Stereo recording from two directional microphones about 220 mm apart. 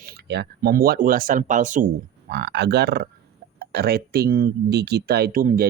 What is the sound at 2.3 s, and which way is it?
Speech, 50° right (ahead or behind).